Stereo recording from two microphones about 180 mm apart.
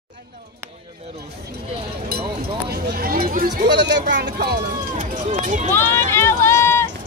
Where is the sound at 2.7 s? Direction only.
55° right (ahead or behind).